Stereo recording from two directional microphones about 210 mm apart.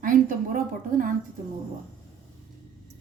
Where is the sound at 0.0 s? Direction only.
40° right (ahead or behind).